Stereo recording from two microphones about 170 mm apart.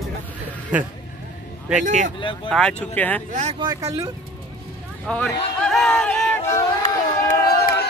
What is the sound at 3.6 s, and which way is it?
Speech, 20° right (ahead or behind).